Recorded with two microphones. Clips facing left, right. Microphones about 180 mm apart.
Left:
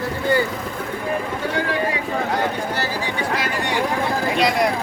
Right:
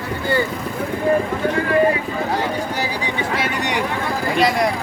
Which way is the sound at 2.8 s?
20° right (ahead or behind).